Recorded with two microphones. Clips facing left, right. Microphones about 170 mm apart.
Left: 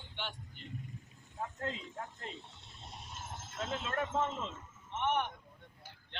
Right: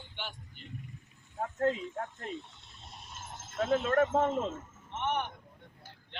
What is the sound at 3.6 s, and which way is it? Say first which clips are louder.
Speech: right 10 dB; 50° right (ahead or behind).